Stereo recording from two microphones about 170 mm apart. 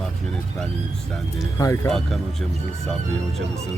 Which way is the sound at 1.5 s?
20° left (ahead or behind).